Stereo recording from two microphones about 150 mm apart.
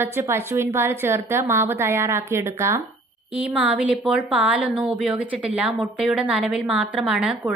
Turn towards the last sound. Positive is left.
turn(degrees=-5)  # may be behind; listen again after turning